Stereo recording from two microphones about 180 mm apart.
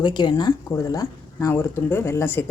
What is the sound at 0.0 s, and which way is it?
Speech, 25° left (ahead or behind).